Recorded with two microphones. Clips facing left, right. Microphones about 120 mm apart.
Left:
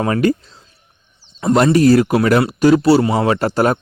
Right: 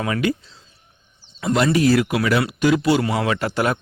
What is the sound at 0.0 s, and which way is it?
Speech, 40° left (ahead or behind).